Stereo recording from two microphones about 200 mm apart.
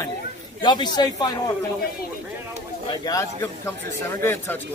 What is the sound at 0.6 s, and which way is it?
Speech, 20° left (ahead or behind).